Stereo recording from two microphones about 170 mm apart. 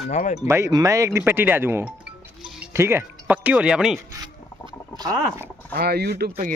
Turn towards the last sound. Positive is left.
turn(degrees=-70)  # may be behind; listen again after turning